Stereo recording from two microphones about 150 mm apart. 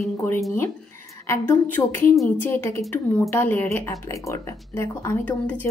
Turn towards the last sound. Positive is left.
turn(degrees=15)  # may be behind; listen again after turning